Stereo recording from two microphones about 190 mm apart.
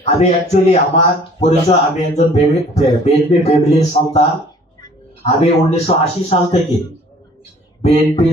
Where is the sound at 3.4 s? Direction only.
35° left (ahead or behind).